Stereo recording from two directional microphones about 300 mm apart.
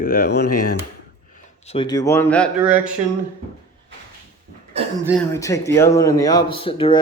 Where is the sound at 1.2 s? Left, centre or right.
Left; by 2.9 s centre.